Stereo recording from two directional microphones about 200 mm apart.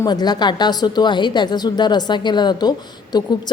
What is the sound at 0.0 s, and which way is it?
A woman's voice, 20° left (ahead or behind).